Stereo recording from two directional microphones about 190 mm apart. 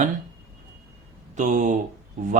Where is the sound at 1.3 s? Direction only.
40° right (ahead or behind).